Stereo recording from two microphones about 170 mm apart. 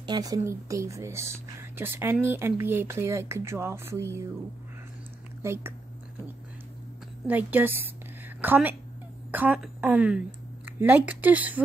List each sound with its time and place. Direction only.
0.0 s speech: 25° right (ahead or behind)
5.4 s speech: 15° right (ahead or behind)
7.2 s a woman's voice: 10° right (ahead or behind)